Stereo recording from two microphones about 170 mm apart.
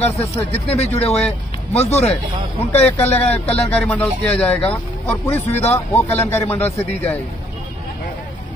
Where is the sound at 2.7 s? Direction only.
10° left (ahead or behind).